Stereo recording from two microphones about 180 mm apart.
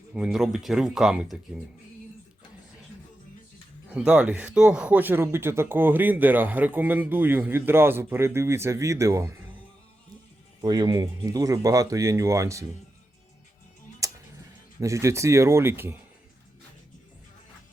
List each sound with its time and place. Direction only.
0.1 s speech: centre (ahead or behind)
3.8 s speech: 5° right (ahead or behind)
10.6 s speech: 25° right (ahead or behind)
14.0 s tick-tock: 20° right (ahead or behind)
14.8 s speech: 15° right (ahead or behind)